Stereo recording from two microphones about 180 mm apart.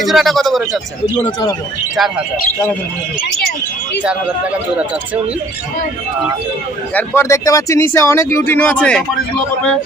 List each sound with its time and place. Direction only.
0.0 s speech: centre (ahead or behind)
1.2 s speech: 25° left (ahead or behind)
2.0 s speech: centre (ahead or behind)
6.9 s speech: 15° left (ahead or behind)